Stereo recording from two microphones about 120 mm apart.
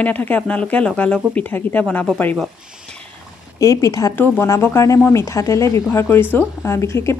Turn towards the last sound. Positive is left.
turn(degrees=25)  # may be behind; listen again after turning